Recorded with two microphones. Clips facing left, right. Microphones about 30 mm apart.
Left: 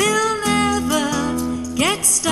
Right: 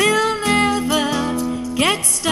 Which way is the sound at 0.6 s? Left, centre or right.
Right.